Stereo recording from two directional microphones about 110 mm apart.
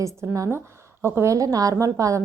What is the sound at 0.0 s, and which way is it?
A woman's voice, 25° right (ahead or behind).